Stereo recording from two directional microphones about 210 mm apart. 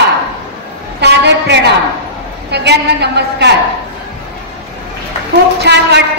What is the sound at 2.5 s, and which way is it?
A woman's voice, 50° right (ahead or behind).